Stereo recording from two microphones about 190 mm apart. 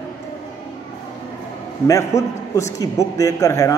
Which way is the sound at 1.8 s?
15° left (ahead or behind).